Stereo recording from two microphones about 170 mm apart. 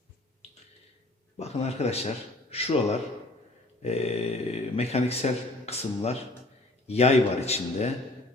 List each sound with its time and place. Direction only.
1.4 s speech: 40° left (ahead or behind)